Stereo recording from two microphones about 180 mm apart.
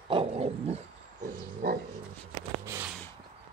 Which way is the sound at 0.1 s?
30° right (ahead or behind).